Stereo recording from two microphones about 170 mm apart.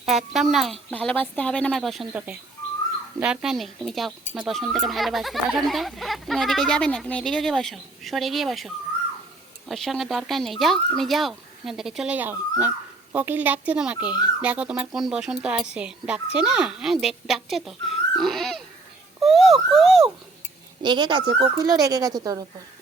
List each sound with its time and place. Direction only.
0.0 s speech: centre (ahead or behind)
19.2 s a sound: centre (ahead or behind)
20.8 s speech: 25° right (ahead or behind)